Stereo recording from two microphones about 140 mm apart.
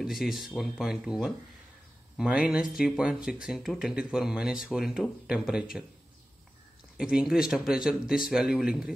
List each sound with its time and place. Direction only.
0.0 s speech: centre (ahead or behind)
7.0 s speech: 5° right (ahead or behind)